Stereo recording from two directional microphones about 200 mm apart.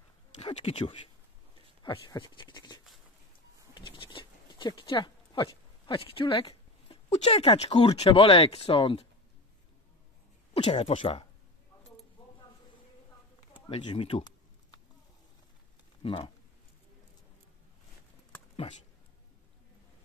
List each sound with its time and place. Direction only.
0.4 s speech: 30° left (ahead or behind)
10.5 s speech: 30° left (ahead or behind)
13.5 s speech: 25° left (ahead or behind)
16.0 s speech: 25° left (ahead or behind)